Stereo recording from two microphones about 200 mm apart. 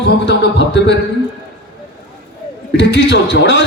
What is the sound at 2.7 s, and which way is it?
Speech, 65° left (ahead or behind).